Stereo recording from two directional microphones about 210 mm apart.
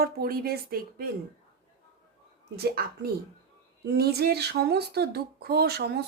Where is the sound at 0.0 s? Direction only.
45° right (ahead or behind).